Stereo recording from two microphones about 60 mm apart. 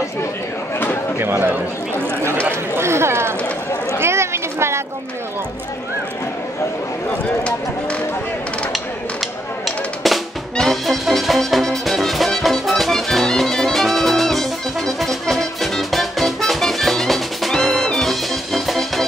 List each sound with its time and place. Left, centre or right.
1.2 s speech: right
2.7 s a sound: right
8.7 s music: centre